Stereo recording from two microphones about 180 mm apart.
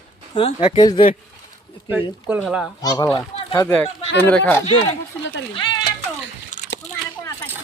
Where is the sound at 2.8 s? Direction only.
20° left (ahead or behind).